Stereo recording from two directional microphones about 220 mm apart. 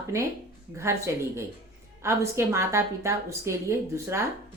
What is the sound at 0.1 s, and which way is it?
Speech, 15° right (ahead or behind).